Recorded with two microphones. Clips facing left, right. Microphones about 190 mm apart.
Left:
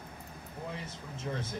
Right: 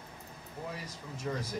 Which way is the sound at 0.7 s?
25° left (ahead or behind).